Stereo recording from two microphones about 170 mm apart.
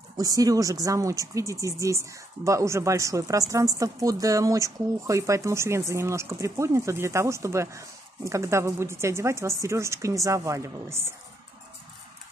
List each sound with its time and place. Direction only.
0.2 s speech: 20° right (ahead or behind)